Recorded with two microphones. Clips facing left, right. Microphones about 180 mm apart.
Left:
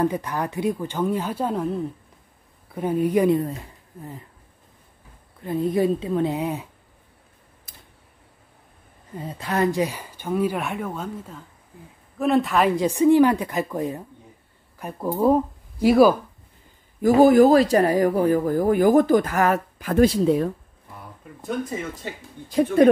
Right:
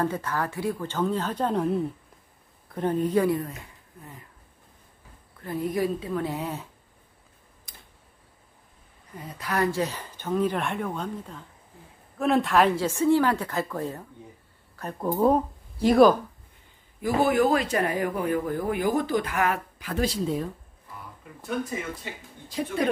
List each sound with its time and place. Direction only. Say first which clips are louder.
0.0 s speech: left 4 dB; 15° left (ahead or behind)
5.4 s speech: left 5 dB; 25° left (ahead or behind)
7.7 s a sound: left 1 dB; 5° left (ahead or behind)
9.2 s speech: left 4 dB; 25° left (ahead or behind); by 12.7 s centre (ahead or behind)
12.7 s speech: left 6 dB; 15° left (ahead or behind)
17.0 s speech: left 9 dB; 40° left (ahead or behind); by 20.4 s 60° left (ahead or behind)
22.5 s speech: left 10 dB; 55° left (ahead or behind)